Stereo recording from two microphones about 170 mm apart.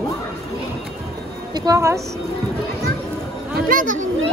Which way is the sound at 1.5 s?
20° right (ahead or behind).